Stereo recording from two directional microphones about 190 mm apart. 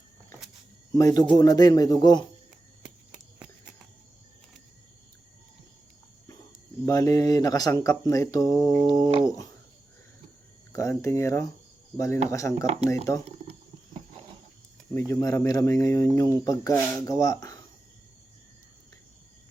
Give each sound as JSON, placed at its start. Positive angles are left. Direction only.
{"t": 0.9, "sound": "speech", "side_deg": 15}
{"t": 6.8, "sound": "speech", "side_deg": 20}
{"t": 9.0, "sound": "a sound", "side_deg": -25}
{"t": 9.2, "sound": "speech", "side_deg": 20}
{"t": 10.7, "sound": "speech", "side_deg": 15}
{"t": 12.6, "sound": "speech", "side_deg": -35}
{"t": 14.9, "sound": "speech", "side_deg": 15}